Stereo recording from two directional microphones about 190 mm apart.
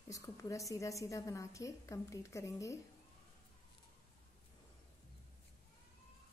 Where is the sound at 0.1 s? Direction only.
15° left (ahead or behind).